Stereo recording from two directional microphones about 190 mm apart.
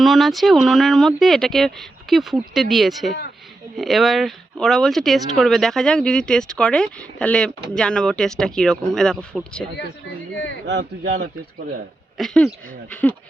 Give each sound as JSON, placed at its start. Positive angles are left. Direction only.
{"t": 0.0, "sound": "speech", "side_deg": 0}
{"t": 10.7, "sound": "speech", "side_deg": -65}
{"t": 12.1, "sound": "speech", "side_deg": 0}